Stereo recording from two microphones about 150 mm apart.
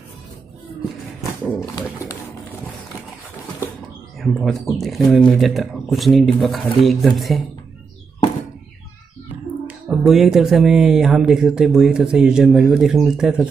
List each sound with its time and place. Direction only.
1.8 s speech: 20° left (ahead or behind)
4.2 s speech: centre (ahead or behind)
9.3 s speech: 5° right (ahead or behind)